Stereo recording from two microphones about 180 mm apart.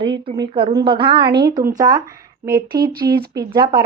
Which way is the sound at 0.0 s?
30° right (ahead or behind).